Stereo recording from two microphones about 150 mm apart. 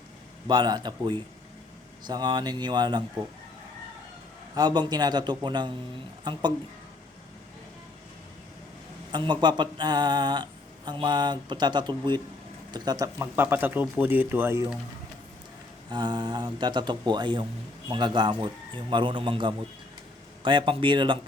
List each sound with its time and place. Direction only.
0.4 s speech: 30° right (ahead or behind)
4.5 s speech: 30° right (ahead or behind)
9.1 s speech: 30° right (ahead or behind)
13.3 s speech: 15° right (ahead or behind)
15.9 s a man's voice: 30° right (ahead or behind)